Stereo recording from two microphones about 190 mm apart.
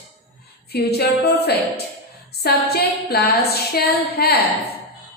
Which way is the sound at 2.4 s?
55° left (ahead or behind).